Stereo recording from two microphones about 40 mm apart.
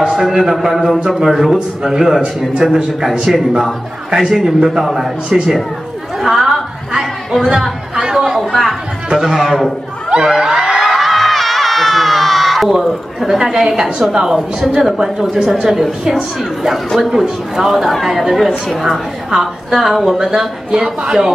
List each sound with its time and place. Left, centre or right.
0.1 s a woman's voice: centre
4.3 s a woman's voice: centre
6.1 s a sound: centre
7.9 s chatter: centre
8.4 s chatter: centre
9.1 s a woman's voice: centre
10.0 s crowd: centre
10.6 s a sound: centre
12.8 s a woman's voice: centre
15.0 s a woman's voice: centre
17.1 s a woman's voice: centre